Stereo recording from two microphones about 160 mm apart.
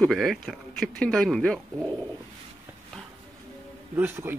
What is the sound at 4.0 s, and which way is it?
Speech, 15° right (ahead or behind).